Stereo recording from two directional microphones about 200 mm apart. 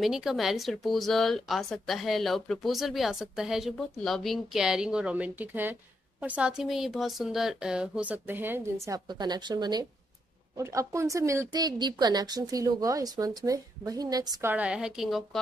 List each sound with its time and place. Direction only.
0.0 s speech: centre (ahead or behind)